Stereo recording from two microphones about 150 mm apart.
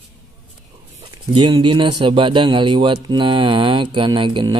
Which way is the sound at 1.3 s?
30° right (ahead or behind).